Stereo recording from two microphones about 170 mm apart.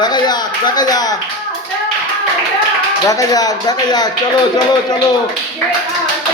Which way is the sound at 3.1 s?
20° left (ahead or behind).